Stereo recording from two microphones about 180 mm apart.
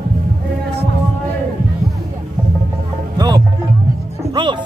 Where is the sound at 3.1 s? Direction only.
20° right (ahead or behind).